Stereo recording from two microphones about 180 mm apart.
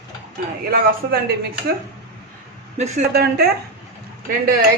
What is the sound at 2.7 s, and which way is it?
Speech, 40° right (ahead or behind).